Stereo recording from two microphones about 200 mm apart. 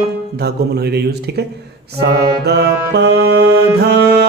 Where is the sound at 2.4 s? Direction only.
55° right (ahead or behind).